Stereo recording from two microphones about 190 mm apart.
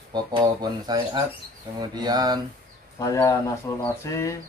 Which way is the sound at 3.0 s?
15° left (ahead or behind).